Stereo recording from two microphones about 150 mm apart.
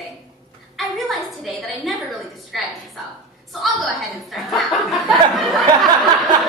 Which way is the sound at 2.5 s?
Centre (ahead or behind).